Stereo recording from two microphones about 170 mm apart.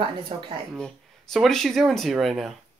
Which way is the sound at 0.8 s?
Centre (ahead or behind).